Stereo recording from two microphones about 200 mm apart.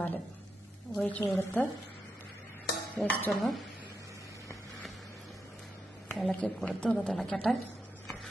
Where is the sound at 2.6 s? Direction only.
5° left (ahead or behind).